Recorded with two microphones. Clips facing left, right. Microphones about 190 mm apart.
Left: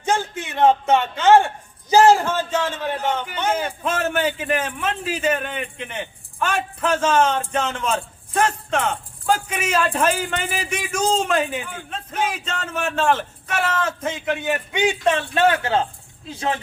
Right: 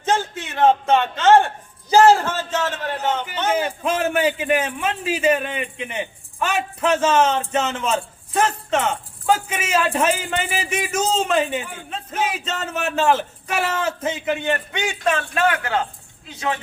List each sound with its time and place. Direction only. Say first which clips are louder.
0.3 s a man's voice: left 1 dB; 15° left (ahead or behind)
3.5 s a man's voice: right 3 dB; 5° right (ahead or behind); by 15.1 s 15° left (ahead or behind)
15.1 s a man's voice: left 2 dB; 30° left (ahead or behind)